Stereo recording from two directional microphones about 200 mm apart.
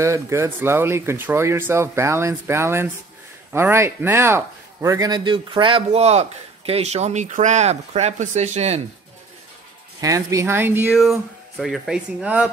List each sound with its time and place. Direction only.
0.0 s speech: 15° right (ahead or behind); by 8.8 s 35° right (ahead or behind)
9.9 s speech: 15° right (ahead or behind)
10.9 s speech: centre (ahead or behind)